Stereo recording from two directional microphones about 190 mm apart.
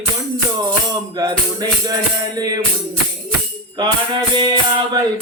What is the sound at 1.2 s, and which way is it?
Music, 20° right (ahead or behind).